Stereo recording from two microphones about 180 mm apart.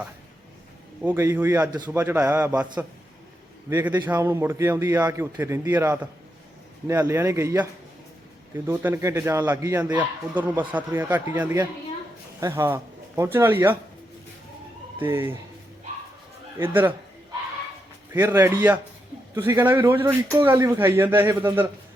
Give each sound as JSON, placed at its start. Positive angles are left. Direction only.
{"t": 1.0, "sound": "a man's voice", "side_deg": -15}
{"t": 3.7, "sound": "a man's voice", "side_deg": -10}
{"t": 14.9, "sound": "speech", "side_deg": -10}
{"t": 16.6, "sound": "a man's voice", "side_deg": -10}
{"t": 18.1, "sound": "a man's voice", "side_deg": -15}